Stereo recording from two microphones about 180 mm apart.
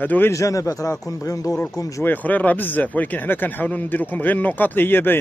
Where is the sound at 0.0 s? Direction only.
10° left (ahead or behind).